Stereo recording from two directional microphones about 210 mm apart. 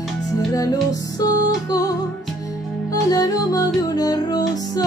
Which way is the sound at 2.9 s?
15° left (ahead or behind).